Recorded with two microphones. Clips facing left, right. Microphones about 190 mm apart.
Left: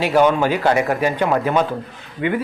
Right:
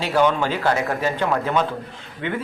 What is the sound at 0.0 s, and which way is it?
A man's voice, 15° left (ahead or behind).